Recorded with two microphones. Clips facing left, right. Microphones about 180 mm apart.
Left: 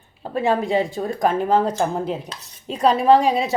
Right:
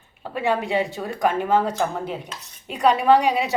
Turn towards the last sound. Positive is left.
turn(degrees=30)  # may be behind; listen again after turning